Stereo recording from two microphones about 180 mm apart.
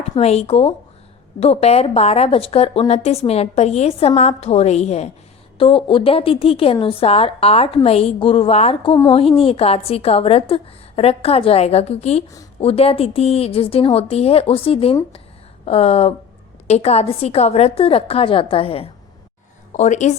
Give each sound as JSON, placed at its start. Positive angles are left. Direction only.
{"t": 0.2, "sound": "a woman's voice", "side_deg": 35}
{"t": 19.7, "sound": "a woman's voice", "side_deg": 40}